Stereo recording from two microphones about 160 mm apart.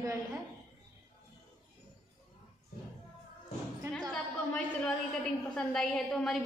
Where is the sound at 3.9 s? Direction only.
5° left (ahead or behind).